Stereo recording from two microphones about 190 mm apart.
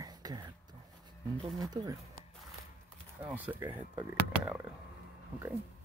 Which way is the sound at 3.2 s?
10° right (ahead or behind).